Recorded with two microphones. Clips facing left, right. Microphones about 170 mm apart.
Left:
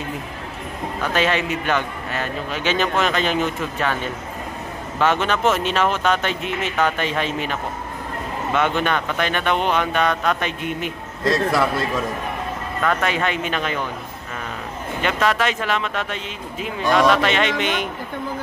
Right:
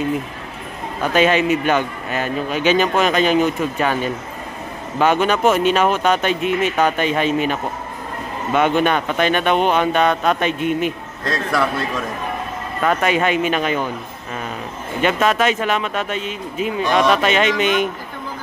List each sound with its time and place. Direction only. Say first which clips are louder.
1.1 s a man's voice: right 6 dB; 15° right (ahead or behind)
8.5 s speech: right 5 dB; 15° right (ahead or behind)
12.8 s a man's voice: right 4 dB; 15° right (ahead or behind)
15.0 s a man's voice: right 4 dB; 20° right (ahead or behind)